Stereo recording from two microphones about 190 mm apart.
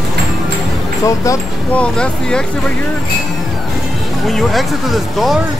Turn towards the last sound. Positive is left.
turn(degrees=0)  # may be behind; listen again after turning